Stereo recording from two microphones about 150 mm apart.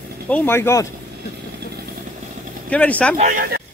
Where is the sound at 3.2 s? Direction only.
60° right (ahead or behind); by 3.6 s 80° right.